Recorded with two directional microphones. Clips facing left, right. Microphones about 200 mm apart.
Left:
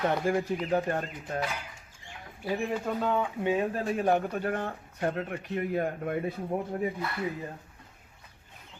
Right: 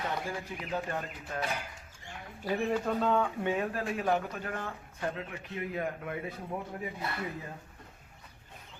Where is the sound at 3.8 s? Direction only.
40° left (ahead or behind).